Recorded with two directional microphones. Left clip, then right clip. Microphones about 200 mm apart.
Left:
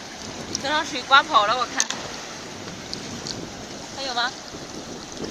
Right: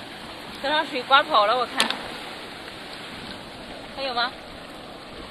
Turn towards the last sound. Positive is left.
turn(degrees=-25)  # may be behind; listen again after turning